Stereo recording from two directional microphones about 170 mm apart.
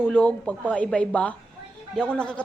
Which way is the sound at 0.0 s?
10° left (ahead or behind).